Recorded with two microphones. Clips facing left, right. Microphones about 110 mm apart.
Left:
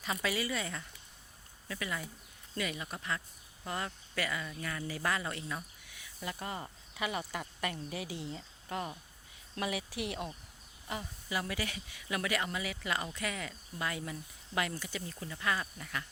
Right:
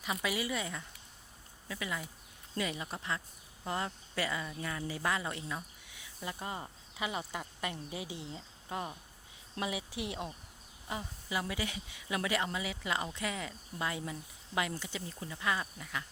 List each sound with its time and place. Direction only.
0.0 s speech: 15° right (ahead or behind)